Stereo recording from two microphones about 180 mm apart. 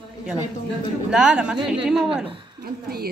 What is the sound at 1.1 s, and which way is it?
A woman's voice, 5° right (ahead or behind).